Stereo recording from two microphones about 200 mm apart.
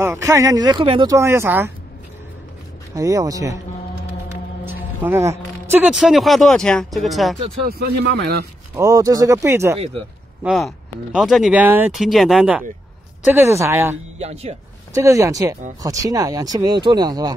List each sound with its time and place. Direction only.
0.0 s speech: 15° right (ahead or behind)
2.9 s speech: 15° right (ahead or behind)
5.0 s speech: 10° right (ahead or behind)
7.6 s speech: 50° right (ahead or behind)
8.7 s speech: 15° right (ahead or behind)
10.4 s speech: 5° right (ahead or behind)
14.1 s speech: 30° right (ahead or behind)
15.0 s speech: 15° right (ahead or behind)